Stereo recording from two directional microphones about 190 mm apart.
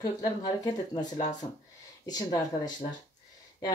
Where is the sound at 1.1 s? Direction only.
40° left (ahead or behind).